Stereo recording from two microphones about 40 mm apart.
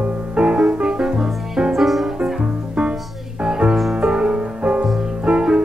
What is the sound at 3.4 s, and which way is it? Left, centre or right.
Music, right.